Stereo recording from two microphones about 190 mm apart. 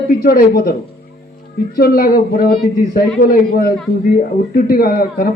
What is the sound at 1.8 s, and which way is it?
Speech, 50° left (ahead or behind).